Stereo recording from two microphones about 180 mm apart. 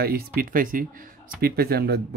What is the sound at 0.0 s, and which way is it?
Speech, 55° right (ahead or behind).